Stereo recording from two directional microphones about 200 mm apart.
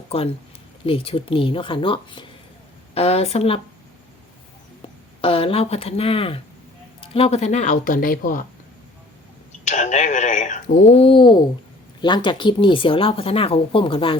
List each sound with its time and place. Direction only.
0.9 s speech: 30° left (ahead or behind)
5.2 s speech: 30° left (ahead or behind); by 8.4 s 45° left (ahead or behind)
9.6 s a sound: 35° left (ahead or behind)
11.9 s speech: 20° left (ahead or behind)